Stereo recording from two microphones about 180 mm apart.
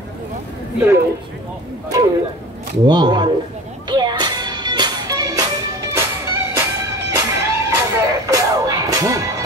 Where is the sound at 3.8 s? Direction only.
25° right (ahead or behind).